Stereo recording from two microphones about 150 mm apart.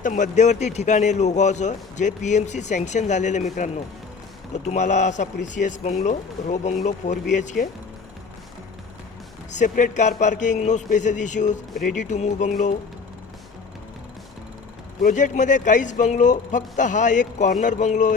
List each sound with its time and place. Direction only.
0.0 s a man's voice: 55° left (ahead or behind)
9.5 s a man's voice: 55° left (ahead or behind)
15.0 s speech: 55° left (ahead or behind)